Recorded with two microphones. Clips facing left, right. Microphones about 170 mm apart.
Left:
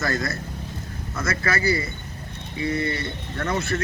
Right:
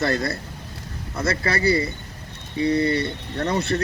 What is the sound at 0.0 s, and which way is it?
Speech, 30° right (ahead or behind).